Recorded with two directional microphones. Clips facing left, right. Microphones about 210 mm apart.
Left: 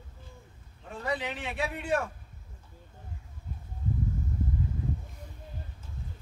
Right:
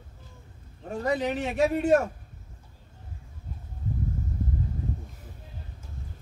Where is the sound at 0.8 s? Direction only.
45° right (ahead or behind).